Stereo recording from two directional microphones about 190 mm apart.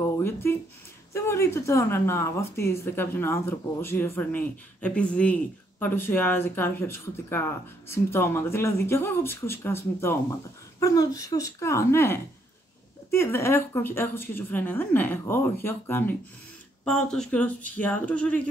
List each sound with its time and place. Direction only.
0.0 s speech: 15° left (ahead or behind)